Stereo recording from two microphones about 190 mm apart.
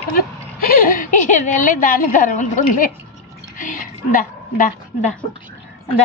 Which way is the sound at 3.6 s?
45° left (ahead or behind).